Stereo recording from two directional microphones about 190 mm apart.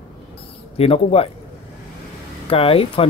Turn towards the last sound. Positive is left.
turn(degrees=30)  # may be behind; listen again after turning